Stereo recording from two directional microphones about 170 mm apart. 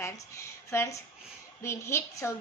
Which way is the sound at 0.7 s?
15° left (ahead or behind).